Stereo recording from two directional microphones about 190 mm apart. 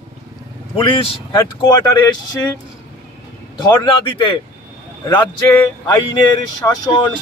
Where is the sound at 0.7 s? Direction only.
25° left (ahead or behind).